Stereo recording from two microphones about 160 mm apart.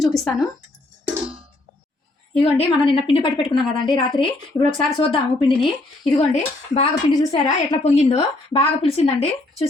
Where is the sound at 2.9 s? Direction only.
35° left (ahead or behind).